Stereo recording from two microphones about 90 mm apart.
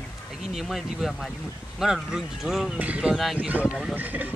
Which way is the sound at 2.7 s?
15° right (ahead or behind).